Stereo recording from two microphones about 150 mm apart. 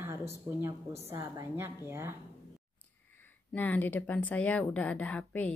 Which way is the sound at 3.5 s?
10° left (ahead or behind).